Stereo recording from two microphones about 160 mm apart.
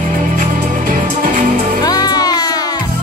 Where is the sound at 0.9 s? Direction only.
60° right (ahead or behind).